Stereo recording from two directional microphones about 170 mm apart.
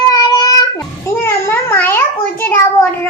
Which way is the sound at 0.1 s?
25° left (ahead or behind).